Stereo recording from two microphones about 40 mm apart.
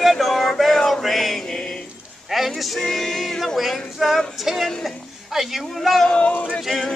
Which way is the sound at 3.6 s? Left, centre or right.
Centre.